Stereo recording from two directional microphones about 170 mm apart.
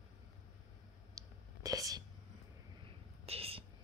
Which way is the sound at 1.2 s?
20° right (ahead or behind).